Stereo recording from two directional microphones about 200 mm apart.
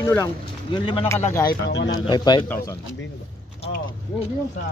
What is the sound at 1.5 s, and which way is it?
Speech, 60° left (ahead or behind).